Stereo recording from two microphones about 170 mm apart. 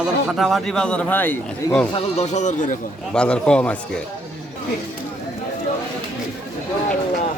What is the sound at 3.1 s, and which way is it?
Speech, 5° left (ahead or behind).